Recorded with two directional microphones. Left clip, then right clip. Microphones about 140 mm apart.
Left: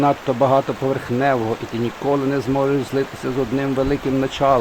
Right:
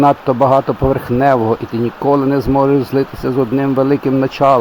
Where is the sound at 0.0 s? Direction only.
35° right (ahead or behind).